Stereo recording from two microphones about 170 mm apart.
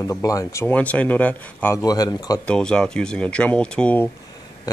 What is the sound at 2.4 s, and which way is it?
Speech, 5° left (ahead or behind).